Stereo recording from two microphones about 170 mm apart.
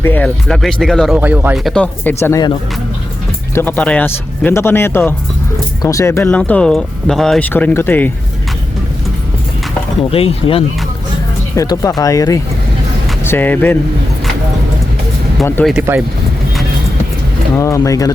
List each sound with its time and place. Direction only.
0.0 s speech: 10° left (ahead or behind)
1.1 s speech: 10° right (ahead or behind)
1.5 s speech: centre (ahead or behind)
2.2 s speech: 20° left (ahead or behind)
3.5 s speech: 10° left (ahead or behind)
10.0 s speech: 35° left (ahead or behind)
11.5 s speech: 20° left (ahead or behind)
15.6 s speech: 10° left (ahead or behind)
17.5 s speech: 15° left (ahead or behind)